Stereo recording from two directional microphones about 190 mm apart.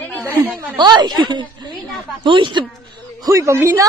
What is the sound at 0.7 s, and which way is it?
A woman's voice, 25° right (ahead or behind).